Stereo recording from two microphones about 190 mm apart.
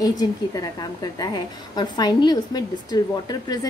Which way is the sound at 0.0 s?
20° left (ahead or behind).